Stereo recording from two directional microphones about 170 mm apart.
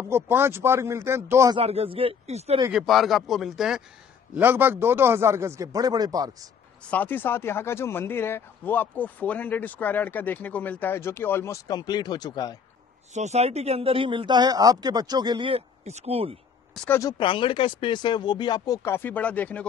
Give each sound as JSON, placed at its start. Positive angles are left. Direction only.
{"t": 0.1, "sound": "speech", "side_deg": -15}
{"t": 1.6, "sound": "speech", "side_deg": -35}
{"t": 2.7, "sound": "speech", "side_deg": 0}
{"t": 6.9, "sound": "speech", "side_deg": 10}
{"t": 13.1, "sound": "speech", "side_deg": -40}
{"t": 16.7, "sound": "speech", "side_deg": 5}
{"t": 17.0, "sound": "speech", "side_deg": 30}